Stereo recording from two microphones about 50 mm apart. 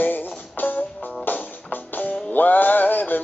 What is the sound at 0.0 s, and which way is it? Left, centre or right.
Music, left.